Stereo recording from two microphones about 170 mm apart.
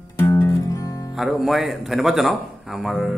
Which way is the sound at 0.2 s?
15° left (ahead or behind).